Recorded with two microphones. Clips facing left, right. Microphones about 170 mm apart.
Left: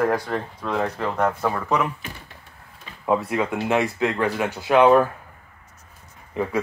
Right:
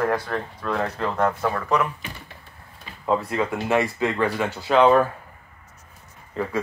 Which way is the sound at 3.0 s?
10° left (ahead or behind).